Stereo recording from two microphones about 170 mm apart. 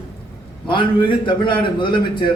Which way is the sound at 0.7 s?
30° left (ahead or behind).